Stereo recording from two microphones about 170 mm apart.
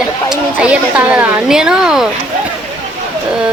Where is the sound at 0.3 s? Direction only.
5° right (ahead or behind).